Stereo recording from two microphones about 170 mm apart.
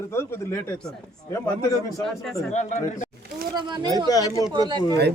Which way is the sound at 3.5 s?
25° right (ahead or behind).